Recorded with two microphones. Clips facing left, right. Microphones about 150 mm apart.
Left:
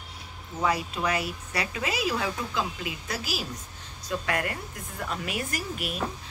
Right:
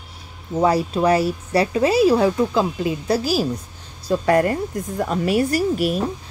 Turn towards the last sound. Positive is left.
turn(degrees=-40)  # may be behind; listen again after turning